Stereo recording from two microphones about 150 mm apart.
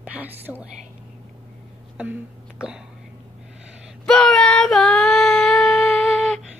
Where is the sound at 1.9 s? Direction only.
10° right (ahead or behind).